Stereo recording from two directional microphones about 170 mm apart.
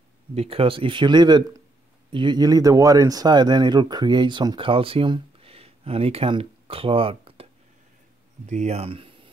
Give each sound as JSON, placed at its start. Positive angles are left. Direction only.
{"t": 0.3, "sound": "speech", "side_deg": -35}
{"t": 8.5, "sound": "speech", "side_deg": -40}